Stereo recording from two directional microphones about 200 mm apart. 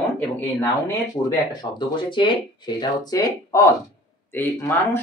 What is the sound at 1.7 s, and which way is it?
Speech, 20° left (ahead or behind).